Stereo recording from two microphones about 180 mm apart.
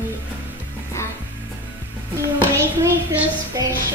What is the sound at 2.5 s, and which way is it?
A woman's voice, 15° right (ahead or behind).